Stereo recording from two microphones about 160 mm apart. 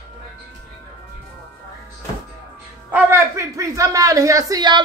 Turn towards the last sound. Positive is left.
turn(degrees=-25)  # may be behind; listen again after turning